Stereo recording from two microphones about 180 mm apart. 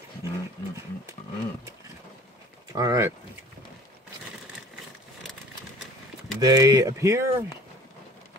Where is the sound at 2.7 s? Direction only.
20° right (ahead or behind).